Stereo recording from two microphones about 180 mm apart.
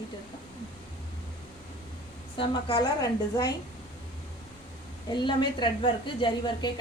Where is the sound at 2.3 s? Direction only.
25° left (ahead or behind).